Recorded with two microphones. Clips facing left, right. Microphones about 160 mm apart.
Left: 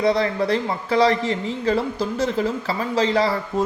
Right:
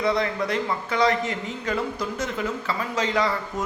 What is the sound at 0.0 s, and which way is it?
Speech, 35° left (ahead or behind).